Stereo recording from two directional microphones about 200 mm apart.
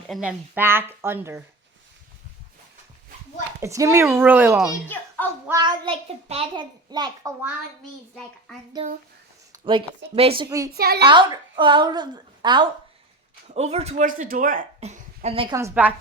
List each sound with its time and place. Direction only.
0.1 s speech: 5° right (ahead or behind)
3.6 s speech: 15° right (ahead or behind)
5.5 s a child's voice: 20° right (ahead or behind)
9.5 s a sound: 25° right (ahead or behind)
10.2 s a child's voice: 25° right (ahead or behind)
10.8 s a woman's voice: 50° right (ahead or behind)
11.0 s a child's voice: 25° right (ahead or behind)
13.5 s speech: 35° right (ahead or behind)
15.5 s speech: 10° right (ahead or behind)